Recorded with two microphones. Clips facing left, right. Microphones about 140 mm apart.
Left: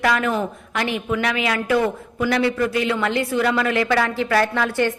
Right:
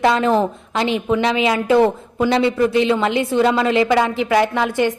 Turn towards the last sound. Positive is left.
turn(degrees=-15)  # may be behind; listen again after turning